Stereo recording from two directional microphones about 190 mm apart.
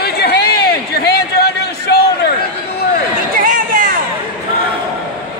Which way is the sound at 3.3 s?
45° right (ahead or behind).